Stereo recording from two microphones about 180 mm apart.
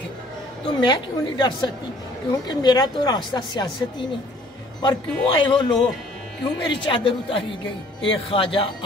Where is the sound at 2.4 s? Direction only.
20° left (ahead or behind).